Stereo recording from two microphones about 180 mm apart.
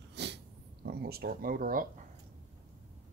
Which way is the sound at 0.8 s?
60° right (ahead or behind).